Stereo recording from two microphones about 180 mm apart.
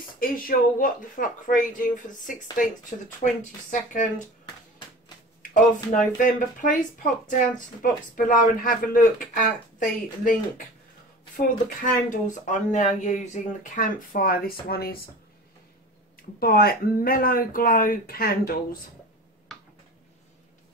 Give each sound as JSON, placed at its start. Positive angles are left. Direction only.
{"t": 0.2, "sound": "speech", "side_deg": 50}
{"t": 5.4, "sound": "speech", "side_deg": 45}
{"t": 11.3, "sound": "speech", "side_deg": 45}
{"t": 16.3, "sound": "speech", "side_deg": 55}